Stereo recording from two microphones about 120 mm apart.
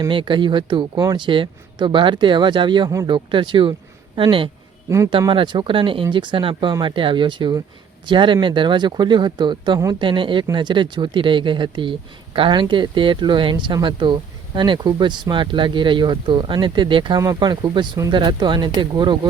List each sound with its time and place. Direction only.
0.1 s speech: 45° right (ahead or behind)